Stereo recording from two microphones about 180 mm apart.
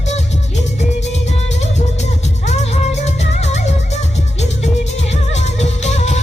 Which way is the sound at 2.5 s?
40° left (ahead or behind).